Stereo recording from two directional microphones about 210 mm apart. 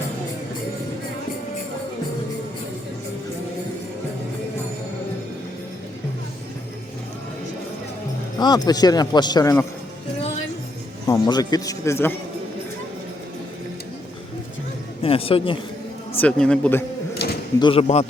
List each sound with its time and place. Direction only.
8.4 s a man's voice: 20° left (ahead or behind)
11.0 s a man's voice: 20° left (ahead or behind)
15.0 s a man's voice: 25° left (ahead or behind)
16.1 s a man's voice: 5° left (ahead or behind)
17.6 s a man's voice: 25° left (ahead or behind)